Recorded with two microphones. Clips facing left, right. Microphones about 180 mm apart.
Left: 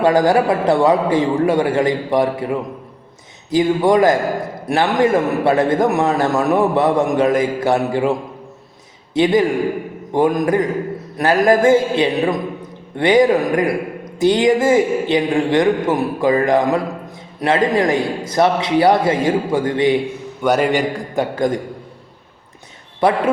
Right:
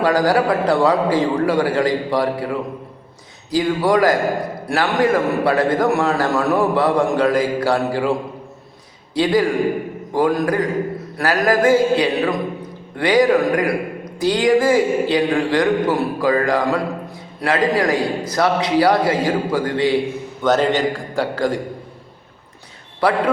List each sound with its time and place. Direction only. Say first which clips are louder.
0.0 s a man's voice: left 2 dB; 25° left (ahead or behind)
9.1 s a man's voice: left 2 dB; 20° left (ahead or behind)
23.0 s a man's voice: left 2 dB; 20° left (ahead or behind)